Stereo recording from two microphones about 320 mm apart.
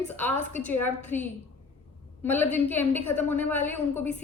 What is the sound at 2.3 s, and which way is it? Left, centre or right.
A woman's voice, centre.